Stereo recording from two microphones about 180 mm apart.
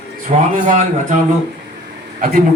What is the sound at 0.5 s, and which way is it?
Speech, 45° right (ahead or behind).